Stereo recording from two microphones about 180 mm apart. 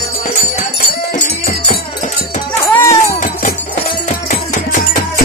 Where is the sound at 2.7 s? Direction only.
15° left (ahead or behind).